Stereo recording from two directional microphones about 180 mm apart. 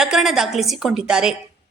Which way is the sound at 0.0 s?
Centre (ahead or behind).